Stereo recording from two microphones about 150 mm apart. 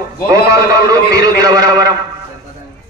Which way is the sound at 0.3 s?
25° right (ahead or behind).